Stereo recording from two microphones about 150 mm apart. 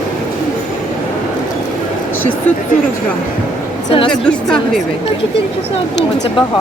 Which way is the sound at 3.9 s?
35° left (ahead or behind).